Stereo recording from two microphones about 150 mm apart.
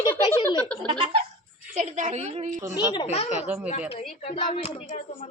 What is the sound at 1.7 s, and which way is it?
A woman's voice, 60° right (ahead or behind).